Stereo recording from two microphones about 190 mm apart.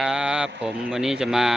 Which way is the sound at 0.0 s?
5° right (ahead or behind).